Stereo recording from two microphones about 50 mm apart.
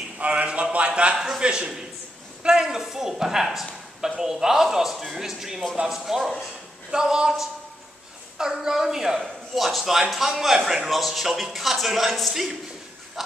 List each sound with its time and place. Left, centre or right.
0.2 s a man's voice: right; by 12.5 s centre